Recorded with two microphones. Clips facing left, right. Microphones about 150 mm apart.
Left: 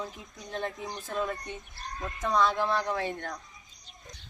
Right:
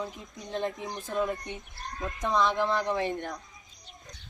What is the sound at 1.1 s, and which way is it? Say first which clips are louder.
A woman's voice: right 3 dB; 20° right (ahead or behind).